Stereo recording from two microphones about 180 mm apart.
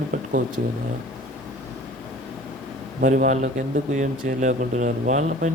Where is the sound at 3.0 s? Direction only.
45° right (ahead or behind).